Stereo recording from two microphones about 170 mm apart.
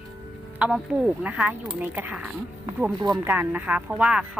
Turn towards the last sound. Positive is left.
turn(degrees=-5)  # may be behind; listen again after turning